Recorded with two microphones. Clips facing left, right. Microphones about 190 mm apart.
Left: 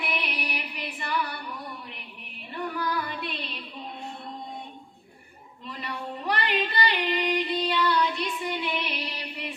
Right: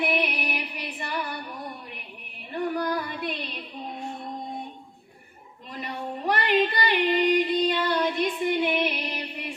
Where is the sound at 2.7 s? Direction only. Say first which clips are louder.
Right 3 dB; 50° right (ahead or behind).